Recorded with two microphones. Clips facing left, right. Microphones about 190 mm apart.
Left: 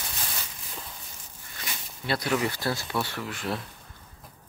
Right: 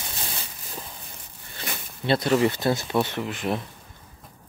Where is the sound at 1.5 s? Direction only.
25° right (ahead or behind).